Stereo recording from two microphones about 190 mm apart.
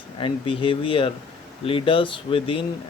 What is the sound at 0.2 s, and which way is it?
Speech, 25° left (ahead or behind).